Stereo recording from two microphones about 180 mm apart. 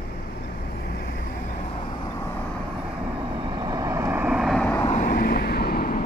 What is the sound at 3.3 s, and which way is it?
Vehicle, 25° right (ahead or behind).